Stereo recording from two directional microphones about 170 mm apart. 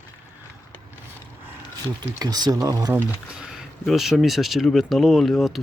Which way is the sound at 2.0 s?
25° right (ahead or behind).